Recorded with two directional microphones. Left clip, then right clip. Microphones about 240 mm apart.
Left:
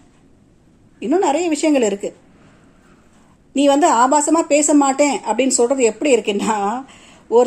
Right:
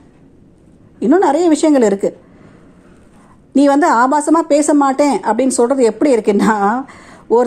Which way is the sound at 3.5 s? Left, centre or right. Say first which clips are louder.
Right 2 dB; right.